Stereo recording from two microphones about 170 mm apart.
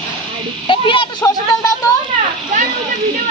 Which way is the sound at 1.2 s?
20° left (ahead or behind).